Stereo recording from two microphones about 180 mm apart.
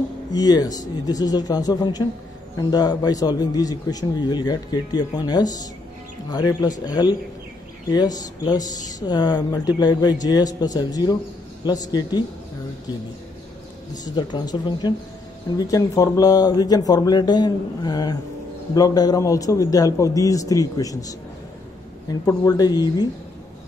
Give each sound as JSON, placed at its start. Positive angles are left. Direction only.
{"t": 0.3, "sound": "a man's voice", "side_deg": 20}
{"t": 14.0, "sound": "a man's voice", "side_deg": 20}
{"t": 22.2, "sound": "a man's voice", "side_deg": 20}